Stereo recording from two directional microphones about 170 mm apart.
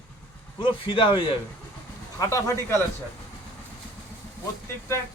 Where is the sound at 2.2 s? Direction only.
15° left (ahead or behind).